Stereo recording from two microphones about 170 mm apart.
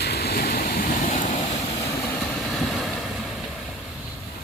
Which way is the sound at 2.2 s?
Centre (ahead or behind).